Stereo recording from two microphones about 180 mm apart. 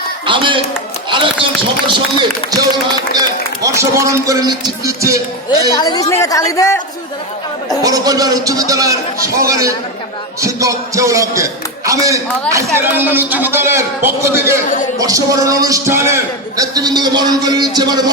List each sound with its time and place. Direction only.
0.3 s a man's voice: 25° right (ahead or behind)
1.9 s a man's voice: 25° right (ahead or behind)
5.7 s a woman's voice: 20° left (ahead or behind)
7.8 s a man's voice: 20° right (ahead or behind)